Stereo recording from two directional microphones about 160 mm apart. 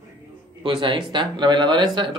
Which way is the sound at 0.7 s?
30° right (ahead or behind).